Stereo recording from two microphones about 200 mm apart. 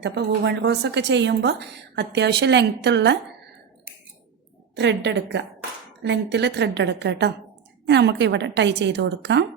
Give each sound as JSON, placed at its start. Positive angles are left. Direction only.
{"t": 0.0, "sound": "a woman's voice", "side_deg": -60}
{"t": 4.7, "sound": "a woman's voice", "side_deg": -60}